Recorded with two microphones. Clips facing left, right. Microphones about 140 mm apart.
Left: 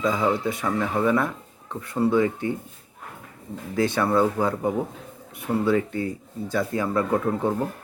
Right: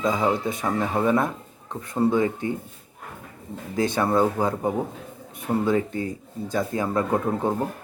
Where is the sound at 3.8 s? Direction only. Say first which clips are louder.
Even; 20° right (ahead or behind).